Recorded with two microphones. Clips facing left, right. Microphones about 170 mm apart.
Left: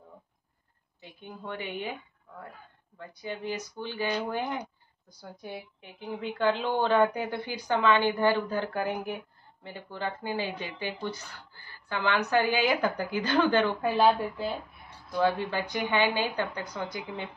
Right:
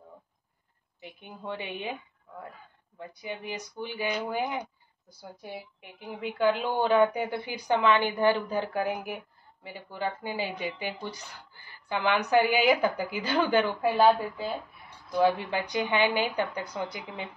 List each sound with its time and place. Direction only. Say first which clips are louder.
1.0 s a woman's voice: right 2 dB; 15° right (ahead or behind)
3.0 s a woman's voice: left 1 dB; 10° right (ahead or behind)
15.1 s a woman's voice: right 2 dB; 15° right (ahead or behind)